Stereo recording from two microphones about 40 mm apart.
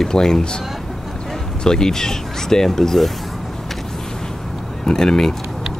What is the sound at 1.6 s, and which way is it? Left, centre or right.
Speech, centre.